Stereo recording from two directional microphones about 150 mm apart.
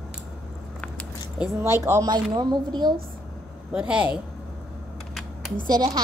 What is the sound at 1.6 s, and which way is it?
Speech, 20° right (ahead or behind).